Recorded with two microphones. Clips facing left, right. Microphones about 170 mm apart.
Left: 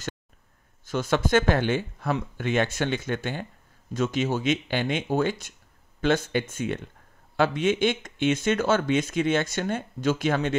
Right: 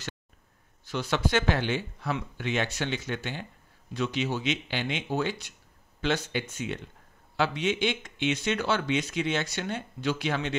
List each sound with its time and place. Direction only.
0.8 s speech: 45° left (ahead or behind)